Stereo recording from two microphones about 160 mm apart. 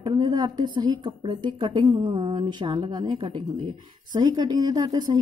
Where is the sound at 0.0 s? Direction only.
25° right (ahead or behind).